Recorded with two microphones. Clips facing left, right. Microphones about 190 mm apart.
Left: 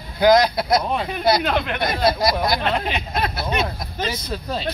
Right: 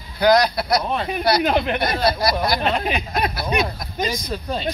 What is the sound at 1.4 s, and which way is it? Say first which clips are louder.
Speech: right 3 dB; 20° right (ahead or behind).